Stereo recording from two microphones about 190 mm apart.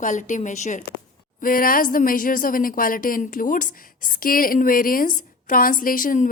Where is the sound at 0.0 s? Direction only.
40° left (ahead or behind).